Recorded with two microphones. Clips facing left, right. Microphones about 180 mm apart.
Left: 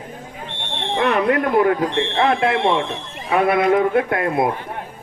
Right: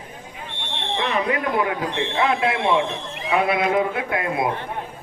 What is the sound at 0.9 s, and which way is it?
A man's voice, 60° left (ahead or behind).